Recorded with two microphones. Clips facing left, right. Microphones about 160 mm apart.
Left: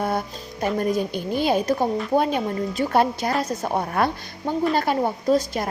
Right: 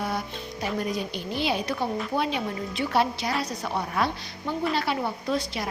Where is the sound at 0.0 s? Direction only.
50° left (ahead or behind).